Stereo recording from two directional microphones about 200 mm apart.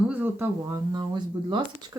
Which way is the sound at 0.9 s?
20° right (ahead or behind).